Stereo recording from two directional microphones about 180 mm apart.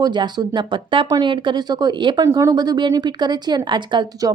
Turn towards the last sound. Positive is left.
turn(degrees=-20)  # may be behind; listen again after turning